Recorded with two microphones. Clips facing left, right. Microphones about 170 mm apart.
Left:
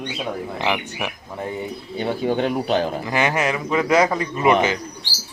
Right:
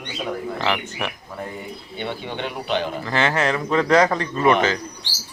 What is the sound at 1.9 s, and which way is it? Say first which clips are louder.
A man's voice: left 8 dB; 40° left (ahead or behind).